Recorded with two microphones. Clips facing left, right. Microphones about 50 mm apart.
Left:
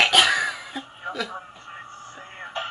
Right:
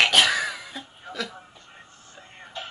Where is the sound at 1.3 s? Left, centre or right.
Left.